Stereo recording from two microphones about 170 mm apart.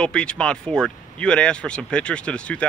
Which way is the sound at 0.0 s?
5° left (ahead or behind).